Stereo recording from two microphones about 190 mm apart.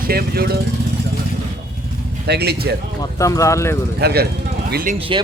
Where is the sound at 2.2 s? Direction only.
60° right (ahead or behind).